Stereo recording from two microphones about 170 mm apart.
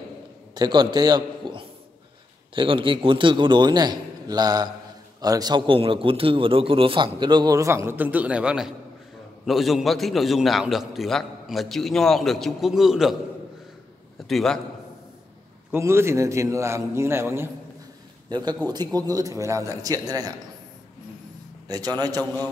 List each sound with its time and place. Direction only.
0.6 s a man's voice: 25° right (ahead or behind); by 13.1 s centre (ahead or behind)
14.2 s a man's voice: centre (ahead or behind)
15.7 s a man's voice: 15° right (ahead or behind)
18.3 s a man's voice: 25° right (ahead or behind)
21.6 s a man's voice: 20° right (ahead or behind)
22.2 s a man's voice: 10° left (ahead or behind)